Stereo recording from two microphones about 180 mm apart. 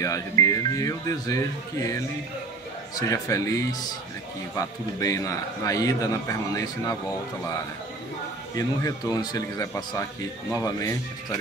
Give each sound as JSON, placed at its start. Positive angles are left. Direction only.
{"t": 0.0, "sound": "a man's voice", "side_deg": 15}
{"t": 8.5, "sound": "a man's voice", "side_deg": 20}